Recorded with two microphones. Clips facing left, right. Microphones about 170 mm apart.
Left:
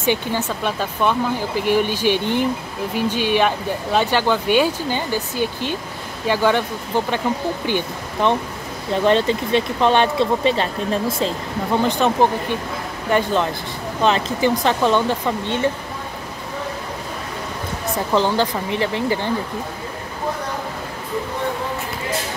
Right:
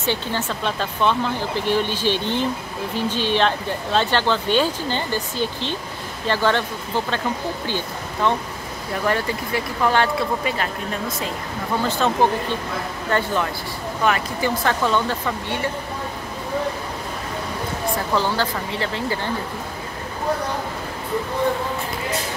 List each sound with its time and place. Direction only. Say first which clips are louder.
0.0 s speech: left 3 dB; 15° left (ahead or behind)
7.6 s speech: left 4 dB; 20° left (ahead or behind)
11.8 s speech: left 2 dB; 15° left (ahead or behind)
17.9 s speech: left 5 dB; 20° left (ahead or behind)